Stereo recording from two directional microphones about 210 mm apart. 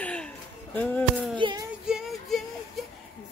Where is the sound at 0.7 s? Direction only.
5° left (ahead or behind).